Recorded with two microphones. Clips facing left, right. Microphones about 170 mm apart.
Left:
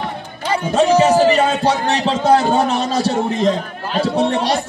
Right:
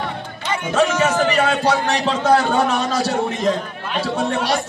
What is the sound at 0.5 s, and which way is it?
A man's voice, 35° left (ahead or behind).